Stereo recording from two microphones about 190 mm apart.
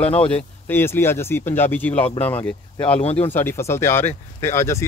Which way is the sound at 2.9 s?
30° left (ahead or behind).